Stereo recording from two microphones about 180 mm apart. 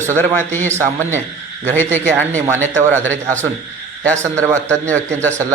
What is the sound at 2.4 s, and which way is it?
Speech, 15° right (ahead or behind).